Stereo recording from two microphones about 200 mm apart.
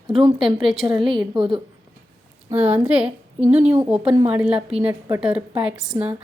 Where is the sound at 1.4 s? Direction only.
25° right (ahead or behind).